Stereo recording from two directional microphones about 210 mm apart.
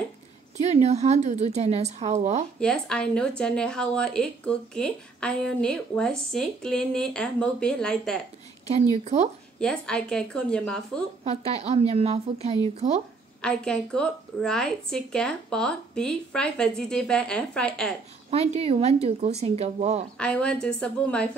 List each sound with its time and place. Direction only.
0.6 s a woman's voice: 35° right (ahead or behind)
2.6 s a woman's voice: 5° left (ahead or behind)
8.7 s a woman's voice: 35° right (ahead or behind)
9.6 s a woman's voice: 5° left (ahead or behind)
11.4 s speech: 30° right (ahead or behind)
13.4 s a woman's voice: 5° left (ahead or behind)
18.3 s speech: 30° right (ahead or behind)
20.2 s a woman's voice: 5° left (ahead or behind)